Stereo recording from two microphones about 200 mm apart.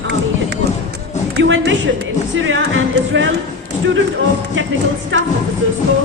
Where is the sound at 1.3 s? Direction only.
70° right (ahead or behind).